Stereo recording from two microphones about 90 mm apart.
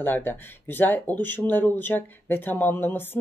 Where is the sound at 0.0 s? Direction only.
20° left (ahead or behind).